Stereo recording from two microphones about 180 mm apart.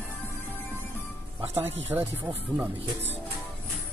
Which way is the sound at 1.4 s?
15° right (ahead or behind).